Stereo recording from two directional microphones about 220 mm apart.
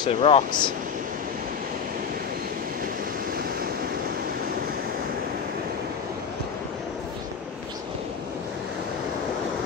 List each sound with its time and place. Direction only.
0.0 s speech: 25° left (ahead or behind)